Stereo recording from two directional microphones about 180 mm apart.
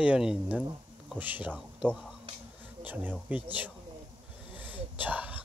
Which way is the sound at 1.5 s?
Centre (ahead or behind).